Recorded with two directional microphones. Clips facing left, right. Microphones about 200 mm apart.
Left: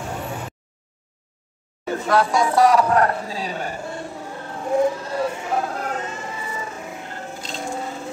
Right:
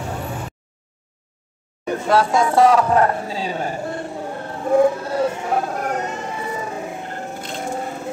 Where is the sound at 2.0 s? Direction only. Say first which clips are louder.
Right 2 dB; 25° right (ahead or behind).